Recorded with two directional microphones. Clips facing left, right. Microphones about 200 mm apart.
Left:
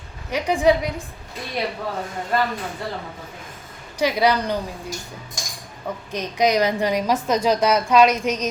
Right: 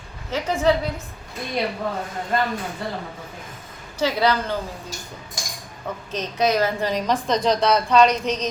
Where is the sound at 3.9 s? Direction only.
15° left (ahead or behind).